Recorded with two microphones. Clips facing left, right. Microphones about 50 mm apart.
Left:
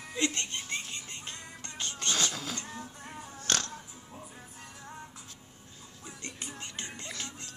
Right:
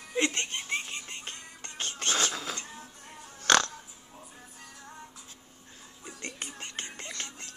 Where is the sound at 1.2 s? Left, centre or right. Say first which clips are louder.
Even; right.